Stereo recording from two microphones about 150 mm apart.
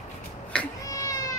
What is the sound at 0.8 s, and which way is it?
Cat, 25° left (ahead or behind).